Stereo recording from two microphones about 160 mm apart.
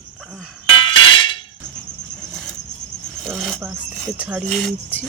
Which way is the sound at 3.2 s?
Centre (ahead or behind).